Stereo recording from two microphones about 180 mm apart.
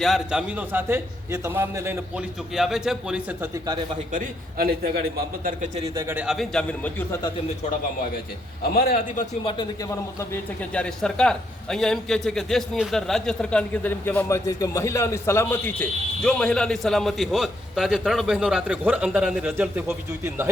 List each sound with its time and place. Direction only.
0.0 s a man's voice: centre (ahead or behind)
2.6 s a man's voice: centre (ahead or behind)
3.5 s speech: 20° right (ahead or behind)
4.1 s a man's voice: 55° right (ahead or behind)
6.0 s a man's voice: 10° right (ahead or behind); by 7.2 s 5° left (ahead or behind)
8.7 s a man's voice: 55° left (ahead or behind)
9.5 s a man's voice: 20° left (ahead or behind); by 20.5 s 15° right (ahead or behind)